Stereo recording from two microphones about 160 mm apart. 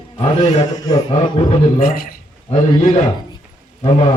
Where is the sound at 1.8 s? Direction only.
65° left (ahead or behind).